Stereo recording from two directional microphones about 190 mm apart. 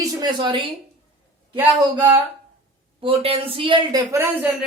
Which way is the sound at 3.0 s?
30° right (ahead or behind).